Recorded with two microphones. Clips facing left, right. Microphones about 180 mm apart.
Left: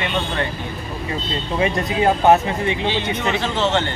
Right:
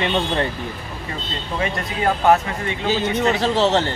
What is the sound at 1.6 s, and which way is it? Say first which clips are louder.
Speech: left 5 dB; 20° left (ahead or behind).